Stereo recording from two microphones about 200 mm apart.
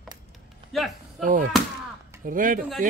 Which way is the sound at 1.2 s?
40° right (ahead or behind).